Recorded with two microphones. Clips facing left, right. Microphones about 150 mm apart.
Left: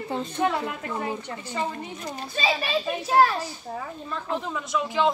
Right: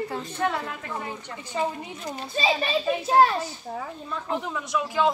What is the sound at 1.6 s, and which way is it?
Speech, 10° right (ahead or behind).